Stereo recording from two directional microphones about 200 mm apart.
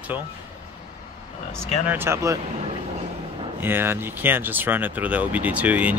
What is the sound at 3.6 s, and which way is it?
Speech, 10° right (ahead or behind).